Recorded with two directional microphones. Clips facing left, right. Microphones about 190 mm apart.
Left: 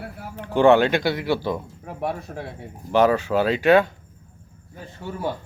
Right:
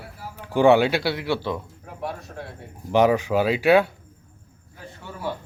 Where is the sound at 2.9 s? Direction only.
15° right (ahead or behind).